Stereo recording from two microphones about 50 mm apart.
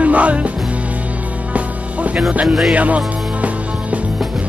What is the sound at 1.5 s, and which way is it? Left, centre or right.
Music, right.